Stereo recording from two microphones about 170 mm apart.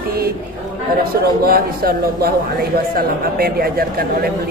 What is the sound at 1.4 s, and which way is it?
A man's voice, 65° right (ahead or behind).